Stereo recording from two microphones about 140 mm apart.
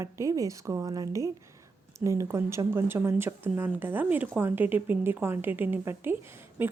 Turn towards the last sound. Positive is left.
turn(degrees=-15)  # may be behind; listen again after turning